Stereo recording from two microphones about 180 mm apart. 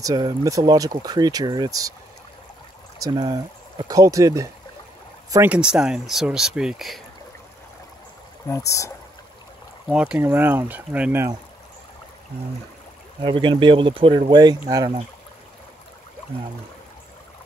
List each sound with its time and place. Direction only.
0.0 s speech: 25° right (ahead or behind)
3.0 s speech: 20° right (ahead or behind); by 7.0 s centre (ahead or behind)
8.5 s speech: 15° left (ahead or behind)
9.8 s speech: 5° right (ahead or behind)
13.2 s speech: 25° right (ahead or behind)